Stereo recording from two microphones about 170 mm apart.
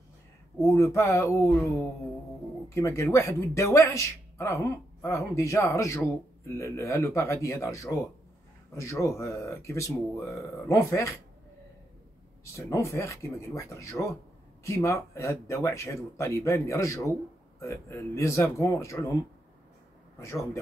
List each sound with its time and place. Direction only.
0.6 s speech: 20° left (ahead or behind)
12.5 s speech: 20° left (ahead or behind)
20.2 s speech: 15° left (ahead or behind)